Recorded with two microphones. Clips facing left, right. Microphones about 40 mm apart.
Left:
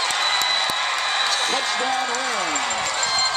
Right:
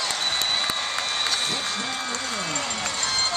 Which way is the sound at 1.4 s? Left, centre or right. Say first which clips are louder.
Left 6 dB; left.